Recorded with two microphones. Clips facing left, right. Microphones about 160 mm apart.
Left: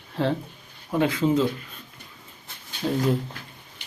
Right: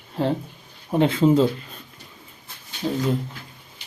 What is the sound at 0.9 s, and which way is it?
Speech, 25° right (ahead or behind).